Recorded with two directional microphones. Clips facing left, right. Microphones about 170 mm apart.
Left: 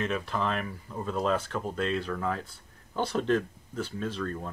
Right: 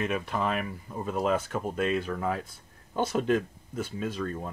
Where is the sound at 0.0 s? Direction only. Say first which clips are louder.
Right 1 dB; 10° right (ahead or behind).